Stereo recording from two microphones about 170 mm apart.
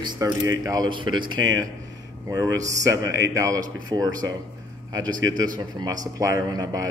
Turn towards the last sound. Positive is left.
turn(degrees=-20)  # may be behind; listen again after turning